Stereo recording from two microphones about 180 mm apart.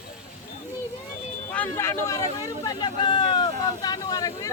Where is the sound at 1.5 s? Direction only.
10° left (ahead or behind).